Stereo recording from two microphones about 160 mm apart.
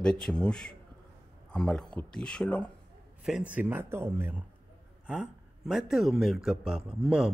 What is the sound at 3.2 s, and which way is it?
A man's voice, 5° right (ahead or behind).